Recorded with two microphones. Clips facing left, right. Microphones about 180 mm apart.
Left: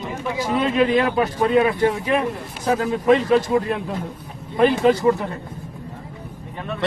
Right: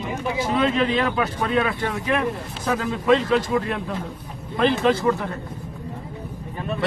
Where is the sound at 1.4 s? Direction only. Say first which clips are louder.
Left 8 dB; 15° left (ahead or behind).